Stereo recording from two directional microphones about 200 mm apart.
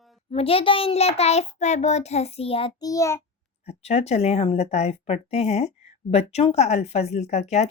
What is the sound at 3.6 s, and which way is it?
Speech, 30° left (ahead or behind).